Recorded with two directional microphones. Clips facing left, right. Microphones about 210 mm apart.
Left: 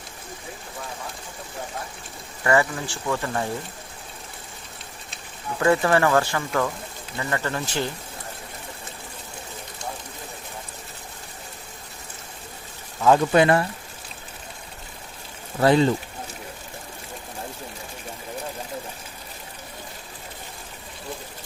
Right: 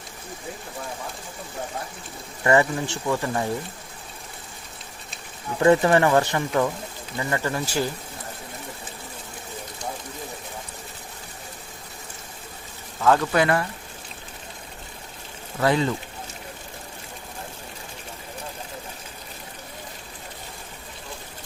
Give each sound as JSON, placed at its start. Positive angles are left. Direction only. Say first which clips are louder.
{"t": 2.4, "sound": "speech", "louder": "right 2 dB", "side_deg": -25}
{"t": 5.5, "sound": "speech", "louder": "right 2 dB", "side_deg": -20}
{"t": 13.0, "sound": "speech", "louder": "left 2 dB", "side_deg": 15}
{"t": 13.3, "sound": "speech", "louder": "left 3 dB", "side_deg": 25}
{"t": 15.6, "sound": "speech", "louder": "left 4 dB", "side_deg": 30}